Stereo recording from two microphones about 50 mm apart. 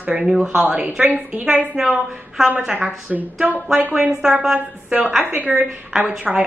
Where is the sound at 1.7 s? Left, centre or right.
Centre.